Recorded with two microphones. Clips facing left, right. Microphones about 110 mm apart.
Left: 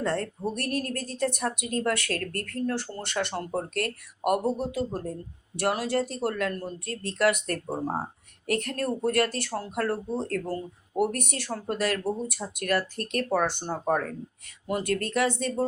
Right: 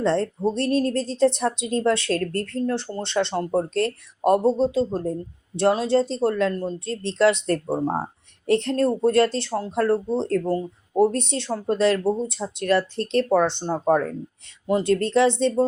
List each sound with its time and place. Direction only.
0.0 s speech: 25° right (ahead or behind)